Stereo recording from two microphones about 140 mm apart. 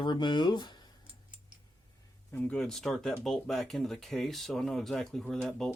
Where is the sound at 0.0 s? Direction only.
35° left (ahead or behind).